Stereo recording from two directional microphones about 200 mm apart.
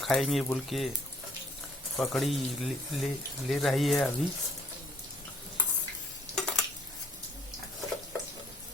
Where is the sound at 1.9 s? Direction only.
Centre (ahead or behind).